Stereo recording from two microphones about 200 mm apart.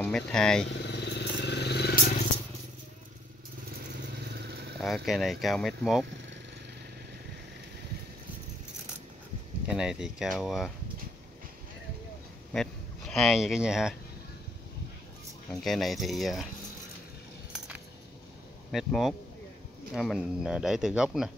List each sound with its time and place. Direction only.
0.0 s speech: 5° left (ahead or behind)
0.7 s vehicle: 55° left (ahead or behind)
4.7 s speech: centre (ahead or behind)
9.7 s speech: 5° right (ahead or behind)
12.5 s speech: centre (ahead or behind)
15.6 s speech: centre (ahead or behind)
17.5 s keys jangling: 5° right (ahead or behind)
18.7 s speech: centre (ahead or behind)